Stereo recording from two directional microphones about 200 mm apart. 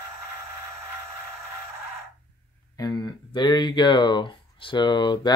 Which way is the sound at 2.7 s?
20° left (ahead or behind).